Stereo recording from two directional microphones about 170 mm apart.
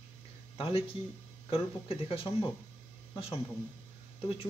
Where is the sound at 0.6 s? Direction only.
35° left (ahead or behind).